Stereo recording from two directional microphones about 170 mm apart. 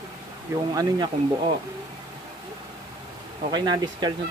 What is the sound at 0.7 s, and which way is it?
Speech, 20° right (ahead or behind).